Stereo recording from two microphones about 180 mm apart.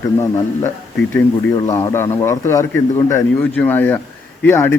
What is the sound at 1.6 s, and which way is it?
A man's voice, 15° left (ahead or behind).